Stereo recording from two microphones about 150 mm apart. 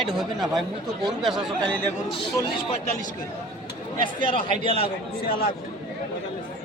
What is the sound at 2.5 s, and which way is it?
Speech, 45° left (ahead or behind).